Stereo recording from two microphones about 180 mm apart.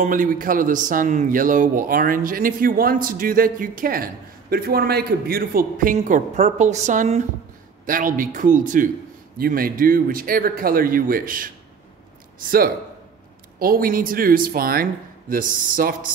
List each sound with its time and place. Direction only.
0.0 s speech: 50° right (ahead or behind)